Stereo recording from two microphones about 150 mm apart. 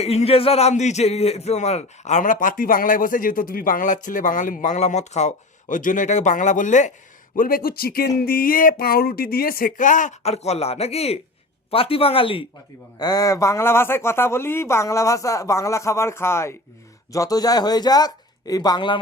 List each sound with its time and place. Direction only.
0.0 s speech: 45° left (ahead or behind)
7.3 s speech: 75° left (ahead or behind); by 8.1 s 90° left
8.2 s speech: 80° left; by 12.5 s 35° left (ahead or behind)
13.0 s speech: 25° left (ahead or behind)